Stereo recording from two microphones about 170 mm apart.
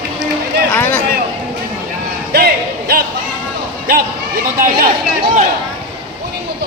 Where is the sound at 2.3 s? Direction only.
65° right (ahead or behind).